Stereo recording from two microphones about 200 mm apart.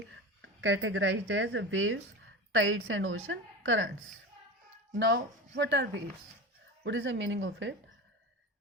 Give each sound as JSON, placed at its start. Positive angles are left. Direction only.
{"t": 0.6, "sound": "a woman's voice", "side_deg": -70}
{"t": 4.9, "sound": "a woman's voice", "side_deg": -60}